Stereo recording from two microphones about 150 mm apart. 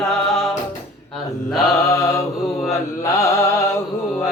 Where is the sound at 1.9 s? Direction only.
20° left (ahead or behind).